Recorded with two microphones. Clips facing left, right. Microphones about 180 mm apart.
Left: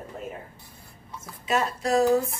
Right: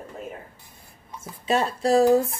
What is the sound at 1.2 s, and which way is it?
Speech, 30° right (ahead or behind).